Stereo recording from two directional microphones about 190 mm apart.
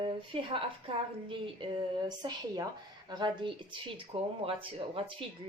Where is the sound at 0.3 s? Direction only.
30° right (ahead or behind).